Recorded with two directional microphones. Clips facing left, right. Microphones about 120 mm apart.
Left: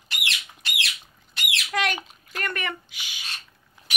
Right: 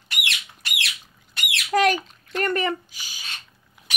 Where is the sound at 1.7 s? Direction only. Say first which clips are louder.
Right 8 dB; 40° right (ahead or behind).